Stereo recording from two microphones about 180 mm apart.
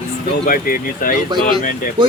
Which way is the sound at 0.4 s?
50° left (ahead or behind).